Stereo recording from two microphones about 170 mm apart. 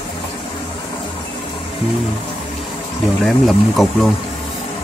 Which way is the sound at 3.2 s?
Centre (ahead or behind).